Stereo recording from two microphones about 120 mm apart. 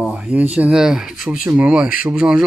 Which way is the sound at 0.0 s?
10° right (ahead or behind).